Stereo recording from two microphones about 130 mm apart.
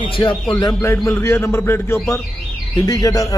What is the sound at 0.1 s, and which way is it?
Speech, 40° left (ahead or behind).